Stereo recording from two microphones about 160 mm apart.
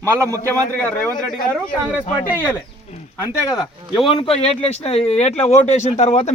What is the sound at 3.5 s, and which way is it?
Speech, 25° left (ahead or behind).